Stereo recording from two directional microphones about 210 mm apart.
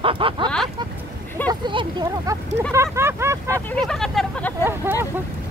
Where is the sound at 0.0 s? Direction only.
25° right (ahead or behind).